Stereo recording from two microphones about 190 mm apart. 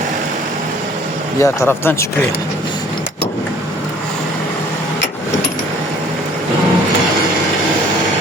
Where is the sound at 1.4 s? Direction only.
10° left (ahead or behind).